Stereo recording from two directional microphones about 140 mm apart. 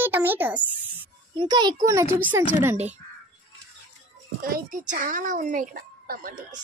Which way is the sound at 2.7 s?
50° right (ahead or behind).